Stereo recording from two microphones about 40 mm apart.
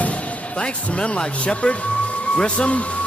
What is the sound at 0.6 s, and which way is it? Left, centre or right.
Speech, left.